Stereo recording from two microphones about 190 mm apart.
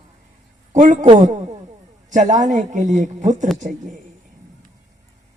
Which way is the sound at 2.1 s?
40° right (ahead or behind).